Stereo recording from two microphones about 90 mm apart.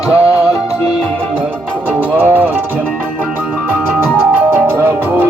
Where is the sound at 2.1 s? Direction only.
25° right (ahead or behind).